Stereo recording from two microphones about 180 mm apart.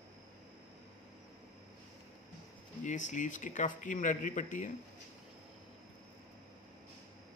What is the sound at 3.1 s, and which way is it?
Speech, 45° left (ahead or behind).